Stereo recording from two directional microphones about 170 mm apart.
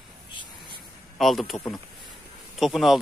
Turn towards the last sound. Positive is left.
turn(degrees=0)  # may be behind; listen again after turning